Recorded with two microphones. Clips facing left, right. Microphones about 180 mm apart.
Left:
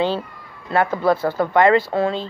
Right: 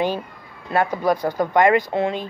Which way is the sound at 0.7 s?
15° right (ahead or behind).